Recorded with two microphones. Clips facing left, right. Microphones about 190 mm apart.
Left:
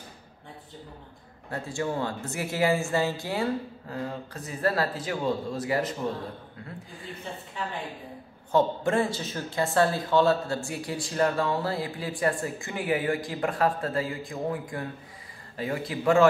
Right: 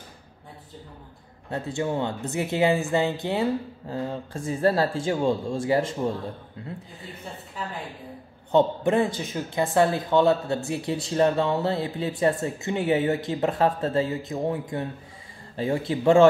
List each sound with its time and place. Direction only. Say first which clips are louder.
1.5 s speech: right 3 dB; 20° right (ahead or behind)
8.5 s speech: right 3 dB; 20° right (ahead or behind)